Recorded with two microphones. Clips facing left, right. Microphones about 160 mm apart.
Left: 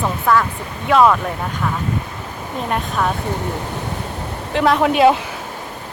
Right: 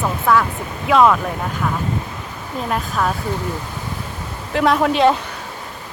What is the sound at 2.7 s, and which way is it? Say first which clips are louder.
Speech: even; centre (ahead or behind).